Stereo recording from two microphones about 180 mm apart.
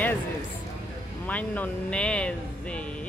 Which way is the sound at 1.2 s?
10° left (ahead or behind).